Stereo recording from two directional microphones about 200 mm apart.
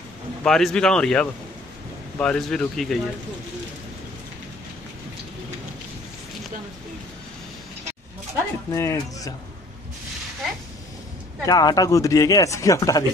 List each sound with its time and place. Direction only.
0.4 s a man's voice: 5° left (ahead or behind)
8.7 s speech: 15° left (ahead or behind)
11.4 s speech: 20° left (ahead or behind)